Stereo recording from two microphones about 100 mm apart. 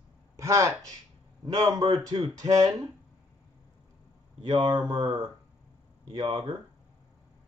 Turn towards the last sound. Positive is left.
turn(degrees=-45)  # may be behind; listen again after turning